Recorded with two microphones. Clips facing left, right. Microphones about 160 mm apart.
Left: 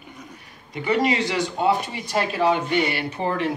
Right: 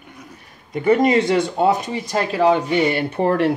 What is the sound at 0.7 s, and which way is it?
Speech, 45° right (ahead or behind).